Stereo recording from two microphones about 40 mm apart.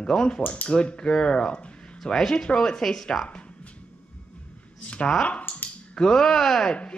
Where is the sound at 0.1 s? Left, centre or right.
Centre.